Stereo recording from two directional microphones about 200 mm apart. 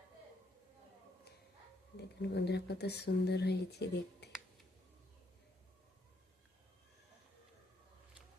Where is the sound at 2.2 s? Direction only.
55° left (ahead or behind).